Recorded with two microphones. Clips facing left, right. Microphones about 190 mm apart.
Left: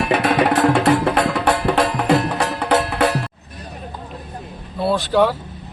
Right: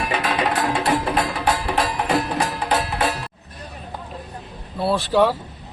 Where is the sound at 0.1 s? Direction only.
65° left (ahead or behind).